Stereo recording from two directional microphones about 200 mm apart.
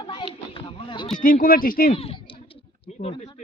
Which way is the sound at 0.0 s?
25° left (ahead or behind).